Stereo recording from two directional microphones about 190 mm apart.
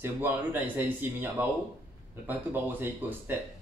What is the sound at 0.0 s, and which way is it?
Speech, 10° right (ahead or behind).